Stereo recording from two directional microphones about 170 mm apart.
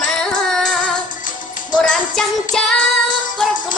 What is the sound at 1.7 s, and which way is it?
Music, 5° left (ahead or behind).